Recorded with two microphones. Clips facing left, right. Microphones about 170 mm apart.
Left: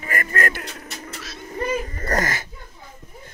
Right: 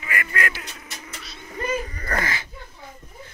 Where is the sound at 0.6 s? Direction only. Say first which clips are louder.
Left 5 dB; 50° left (ahead or behind).